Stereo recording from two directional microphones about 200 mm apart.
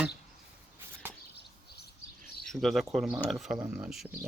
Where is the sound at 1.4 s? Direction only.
55° left (ahead or behind).